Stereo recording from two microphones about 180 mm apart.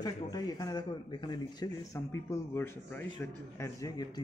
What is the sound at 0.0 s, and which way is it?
Speech, 20° left (ahead or behind).